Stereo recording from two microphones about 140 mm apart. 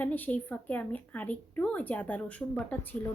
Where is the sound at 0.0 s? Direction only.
10° left (ahead or behind).